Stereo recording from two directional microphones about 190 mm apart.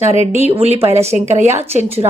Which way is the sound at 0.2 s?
35° right (ahead or behind).